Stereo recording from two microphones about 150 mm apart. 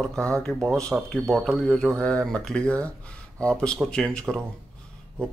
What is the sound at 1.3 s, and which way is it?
Speech, 5° left (ahead or behind).